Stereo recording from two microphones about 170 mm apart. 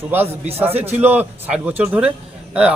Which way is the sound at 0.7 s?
40° right (ahead or behind).